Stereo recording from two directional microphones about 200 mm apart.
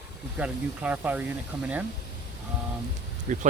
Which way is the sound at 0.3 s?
5° right (ahead or behind).